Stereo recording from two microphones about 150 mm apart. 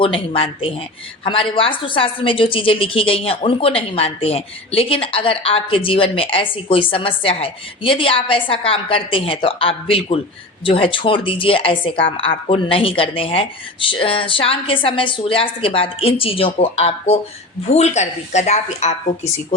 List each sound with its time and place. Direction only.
0.0 s a woman's voice: 35° left (ahead or behind)